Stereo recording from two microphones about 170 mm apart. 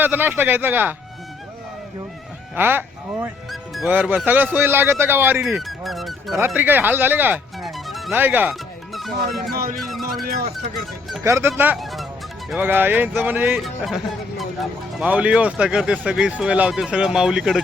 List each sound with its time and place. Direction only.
0.0 s a man's voice: 10° right (ahead or behind)
2.6 s a man's voice: 10° right (ahead or behind)
6.4 s a man's voice: 10° right (ahead or behind)
7.6 s music: centre (ahead or behind)
8.1 s a man's voice: 10° right (ahead or behind)
8.9 s speech: centre (ahead or behind)
9.4 s music: 60° right (ahead or behind)
11.2 s a man's voice: 15° right (ahead or behind)
11.8 s speech: centre (ahead or behind)
12.5 s a man's voice: 10° right (ahead or behind)
13.6 s speech: centre (ahead or behind)